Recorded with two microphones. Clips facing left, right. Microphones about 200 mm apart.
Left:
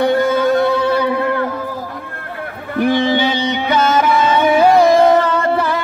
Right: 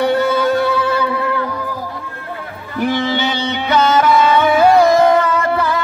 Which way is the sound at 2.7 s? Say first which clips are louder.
Left 3 dB; 55° left (ahead or behind).